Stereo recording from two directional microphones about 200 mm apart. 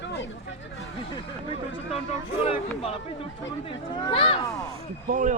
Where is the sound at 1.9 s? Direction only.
30° left (ahead or behind).